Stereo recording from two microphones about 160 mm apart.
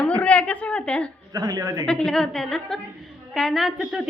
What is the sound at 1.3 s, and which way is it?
Speech, 20° right (ahead or behind).